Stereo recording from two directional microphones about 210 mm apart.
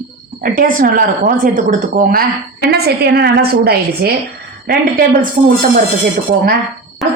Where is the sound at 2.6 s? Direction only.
50° right (ahead or behind).